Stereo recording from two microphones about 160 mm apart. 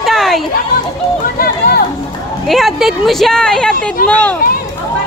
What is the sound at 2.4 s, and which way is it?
Speech, centre (ahead or behind).